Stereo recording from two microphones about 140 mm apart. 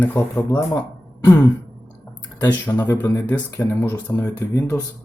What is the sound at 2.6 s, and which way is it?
Speech, 10° left (ahead or behind).